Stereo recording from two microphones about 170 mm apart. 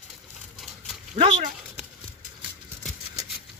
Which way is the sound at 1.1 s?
40° right (ahead or behind).